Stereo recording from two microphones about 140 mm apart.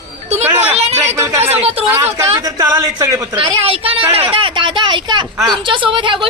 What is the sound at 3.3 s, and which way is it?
Speech, 40° right (ahead or behind).